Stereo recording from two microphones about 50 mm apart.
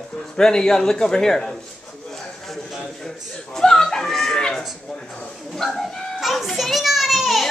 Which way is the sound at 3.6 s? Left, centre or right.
Centre.